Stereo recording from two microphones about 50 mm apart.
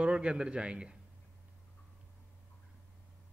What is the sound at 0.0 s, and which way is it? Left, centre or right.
Speech, right.